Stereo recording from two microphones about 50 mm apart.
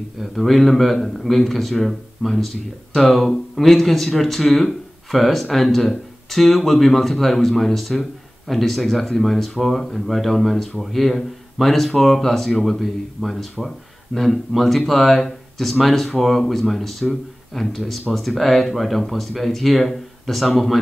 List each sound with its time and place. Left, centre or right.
0.2 s speech: centre